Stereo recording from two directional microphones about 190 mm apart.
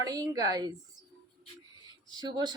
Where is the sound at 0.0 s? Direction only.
20° right (ahead or behind).